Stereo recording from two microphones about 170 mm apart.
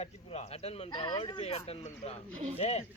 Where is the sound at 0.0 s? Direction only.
40° left (ahead or behind).